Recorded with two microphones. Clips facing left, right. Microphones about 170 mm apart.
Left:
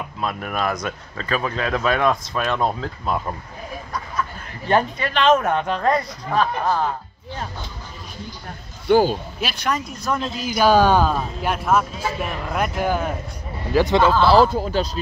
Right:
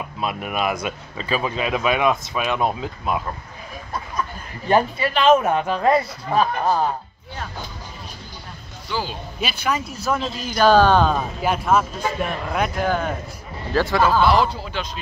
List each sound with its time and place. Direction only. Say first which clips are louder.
0.2 s speech: even; 15° right (ahead or behind)
4.6 s speech: right 1 dB; 10° right (ahead or behind)
8.8 s speech: left 12 dB; 50° left (ahead or behind)
9.4 s speech: right 3 dB; centre (ahead or behind)
13.7 s speech: left 2 dB; 20° left (ahead or behind)
14.2 s speech: left 5 dB; 30° left (ahead or behind)
14.5 s speech: left 7 dB; 45° left (ahead or behind)